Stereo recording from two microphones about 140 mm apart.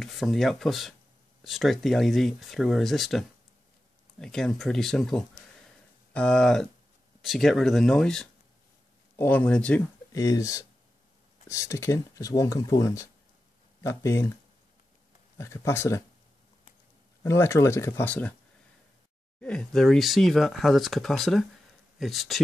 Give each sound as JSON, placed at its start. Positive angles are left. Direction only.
{"t": 0.0, "sound": "speech", "side_deg": 0}
{"t": 10.1, "sound": "speech", "side_deg": 25}
{"t": 15.3, "sound": "speech", "side_deg": 20}
{"t": 17.2, "sound": "speech", "side_deg": 20}
{"t": 19.4, "sound": "speech", "side_deg": 5}